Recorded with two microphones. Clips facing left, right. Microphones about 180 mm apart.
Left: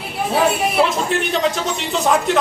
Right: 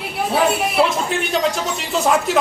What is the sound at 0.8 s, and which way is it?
A man's voice, centre (ahead or behind).